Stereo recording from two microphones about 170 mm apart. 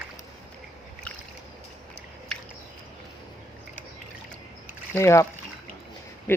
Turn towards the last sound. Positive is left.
turn(degrees=15)  # may be behind; listen again after turning